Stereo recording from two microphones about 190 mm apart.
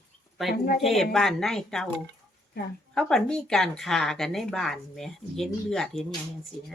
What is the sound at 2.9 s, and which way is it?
Speech, 5° left (ahead or behind).